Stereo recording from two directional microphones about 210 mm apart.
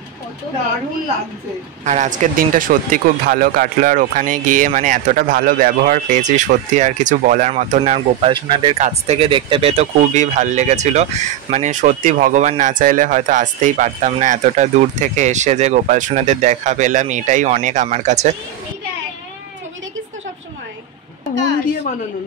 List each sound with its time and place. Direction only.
1.9 s speech: 35° right (ahead or behind)
8.7 s speech: 30° right (ahead or behind)